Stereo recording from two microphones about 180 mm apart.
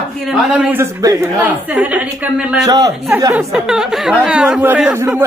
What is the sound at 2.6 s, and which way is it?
Speech, 20° right (ahead or behind).